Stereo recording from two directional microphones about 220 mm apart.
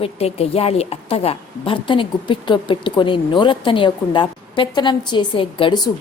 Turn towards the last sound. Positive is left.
turn(degrees=25)  # may be behind; listen again after turning